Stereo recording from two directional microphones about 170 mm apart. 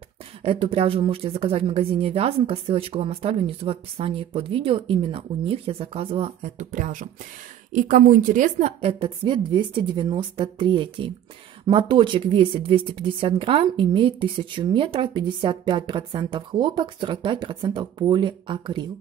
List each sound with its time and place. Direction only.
0.4 s speech: 35° right (ahead or behind)